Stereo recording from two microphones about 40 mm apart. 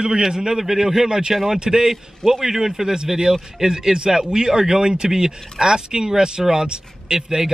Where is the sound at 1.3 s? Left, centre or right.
Centre.